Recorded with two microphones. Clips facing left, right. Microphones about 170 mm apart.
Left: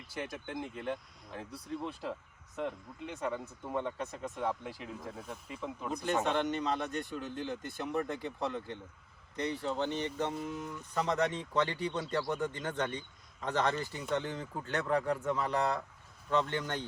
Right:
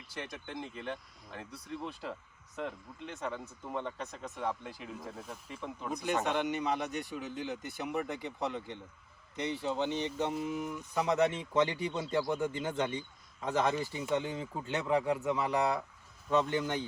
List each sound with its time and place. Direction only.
0.2 s speech: 5° left (ahead or behind)
3.2 s speech: 5° left (ahead or behind)
5.9 s speech: 10° right (ahead or behind)